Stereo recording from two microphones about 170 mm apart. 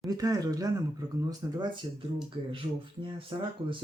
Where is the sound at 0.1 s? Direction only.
20° right (ahead or behind).